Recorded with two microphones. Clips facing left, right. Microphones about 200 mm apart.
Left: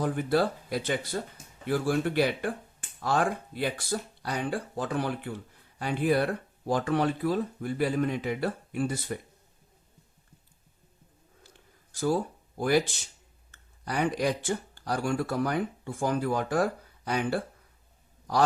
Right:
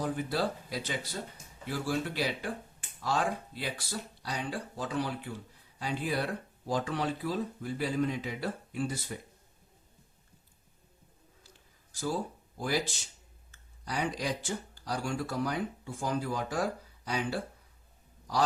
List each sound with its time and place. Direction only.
0.0 s speech: 55° left (ahead or behind)
11.9 s a sound: 55° left (ahead or behind)
12.5 s speech: 60° left (ahead or behind)
13.8 s speech: 55° left (ahead or behind)